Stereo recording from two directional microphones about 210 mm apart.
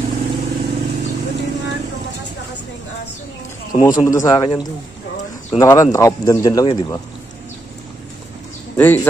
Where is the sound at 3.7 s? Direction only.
15° left (ahead or behind).